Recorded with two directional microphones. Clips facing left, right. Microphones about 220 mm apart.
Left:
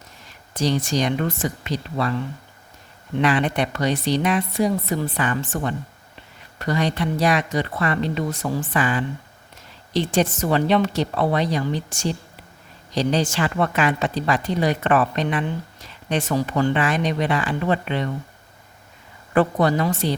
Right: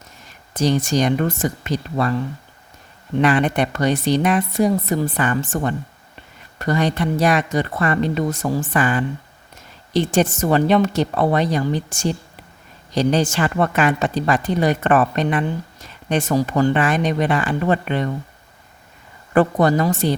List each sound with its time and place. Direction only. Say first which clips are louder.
0.5 s a woman's voice: right 3 dB; 45° right (ahead or behind)
3.2 s a woman's voice: right 3 dB; 50° right (ahead or behind)
19.3 s a woman's voice: right 3 dB; 45° right (ahead or behind)